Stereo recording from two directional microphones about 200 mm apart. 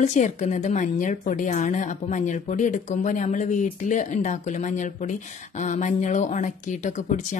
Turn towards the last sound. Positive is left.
turn(degrees=40)  # may be behind; listen again after turning